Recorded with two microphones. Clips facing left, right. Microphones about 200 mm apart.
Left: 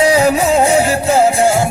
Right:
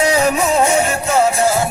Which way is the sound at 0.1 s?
30° left (ahead or behind).